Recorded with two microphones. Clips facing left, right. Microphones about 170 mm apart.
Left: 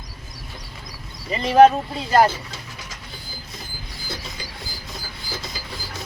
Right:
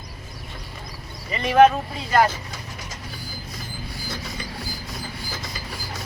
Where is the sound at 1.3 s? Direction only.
30° left (ahead or behind).